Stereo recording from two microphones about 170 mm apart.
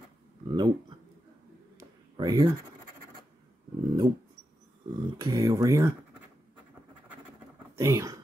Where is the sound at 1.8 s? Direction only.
25° right (ahead or behind).